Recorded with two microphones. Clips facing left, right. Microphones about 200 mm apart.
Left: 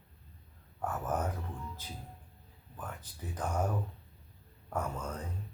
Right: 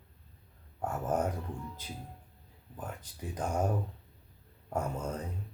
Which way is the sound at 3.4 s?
25° right (ahead or behind).